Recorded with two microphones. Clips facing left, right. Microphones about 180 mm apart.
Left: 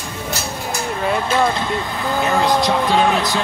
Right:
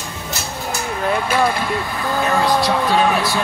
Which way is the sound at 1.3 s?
20° left (ahead or behind).